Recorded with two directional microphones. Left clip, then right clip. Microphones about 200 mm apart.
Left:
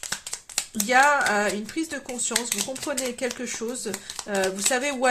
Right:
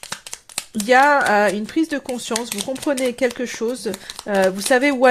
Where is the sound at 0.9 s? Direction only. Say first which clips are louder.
Right 6 dB; 45° right (ahead or behind).